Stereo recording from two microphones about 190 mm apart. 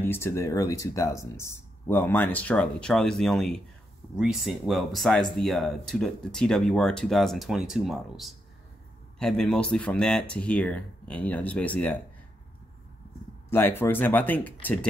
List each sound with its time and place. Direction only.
0.0 s speech: 10° left (ahead or behind)
13.5 s speech: 10° left (ahead or behind)